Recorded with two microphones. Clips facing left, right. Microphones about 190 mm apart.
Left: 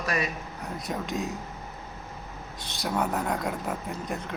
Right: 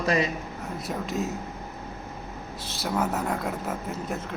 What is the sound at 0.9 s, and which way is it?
Speech, centre (ahead or behind).